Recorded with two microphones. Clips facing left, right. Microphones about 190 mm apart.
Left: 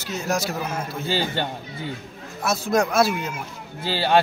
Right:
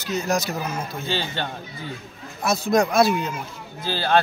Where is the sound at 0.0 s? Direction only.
5° left (ahead or behind).